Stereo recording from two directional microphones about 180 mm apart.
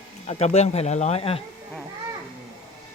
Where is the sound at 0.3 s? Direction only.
35° left (ahead or behind).